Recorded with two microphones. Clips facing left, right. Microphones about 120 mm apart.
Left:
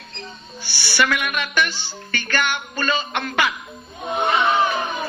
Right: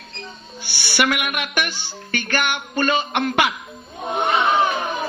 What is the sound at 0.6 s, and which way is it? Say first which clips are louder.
A woman's voice: right 1 dB; 15° right (ahead or behind).